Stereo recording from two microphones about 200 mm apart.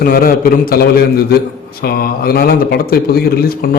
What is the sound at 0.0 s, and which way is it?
Speech, 50° left (ahead or behind).